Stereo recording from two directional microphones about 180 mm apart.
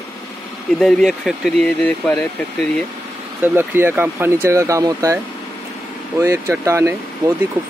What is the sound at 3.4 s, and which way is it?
Speech, 10° right (ahead or behind).